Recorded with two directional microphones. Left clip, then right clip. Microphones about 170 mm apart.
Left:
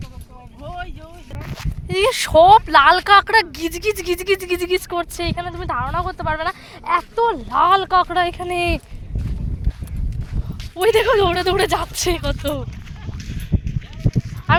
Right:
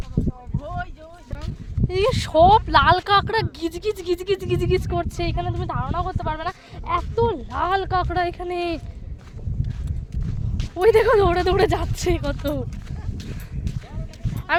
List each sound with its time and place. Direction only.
1.9 s speech: 35° left (ahead or behind)
10.6 s a woman's voice: 15° left (ahead or behind)
13.7 s a sound: 10° left (ahead or behind)